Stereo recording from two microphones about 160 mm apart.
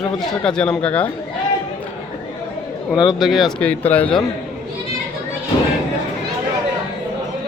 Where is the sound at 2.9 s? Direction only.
Centre (ahead or behind).